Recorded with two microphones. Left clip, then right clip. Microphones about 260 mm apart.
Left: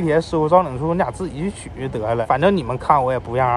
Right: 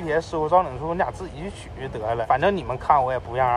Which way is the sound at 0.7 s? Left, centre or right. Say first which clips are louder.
Left 5 dB; left.